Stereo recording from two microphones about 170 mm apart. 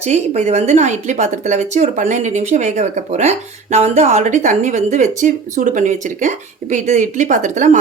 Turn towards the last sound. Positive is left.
turn(degrees=-45)  # may be behind; listen again after turning